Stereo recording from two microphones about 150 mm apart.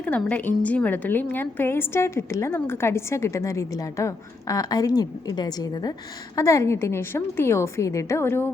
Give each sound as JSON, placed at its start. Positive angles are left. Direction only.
{"t": 0.0, "sound": "a woman's voice", "side_deg": 10}